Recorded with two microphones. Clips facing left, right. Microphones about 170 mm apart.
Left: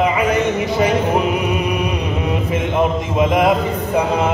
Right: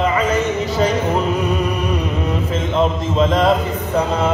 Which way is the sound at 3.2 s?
15° left (ahead or behind).